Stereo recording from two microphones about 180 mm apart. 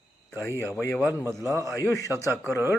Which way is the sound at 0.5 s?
10° left (ahead or behind).